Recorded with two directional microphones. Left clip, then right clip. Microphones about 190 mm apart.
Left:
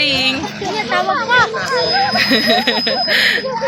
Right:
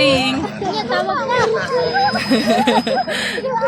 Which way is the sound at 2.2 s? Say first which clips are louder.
Left 3 dB; 5° right (ahead or behind).